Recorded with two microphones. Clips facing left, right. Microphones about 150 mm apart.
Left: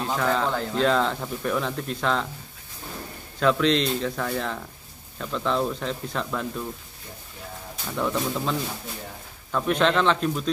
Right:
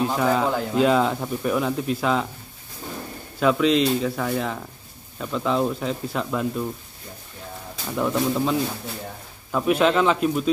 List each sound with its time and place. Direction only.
0.0 s speech: 10° right (ahead or behind)
3.3 s speech: 5° right (ahead or behind)
7.9 s speech: 10° right (ahead or behind)